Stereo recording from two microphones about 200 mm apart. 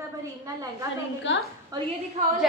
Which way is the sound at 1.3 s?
65° left (ahead or behind).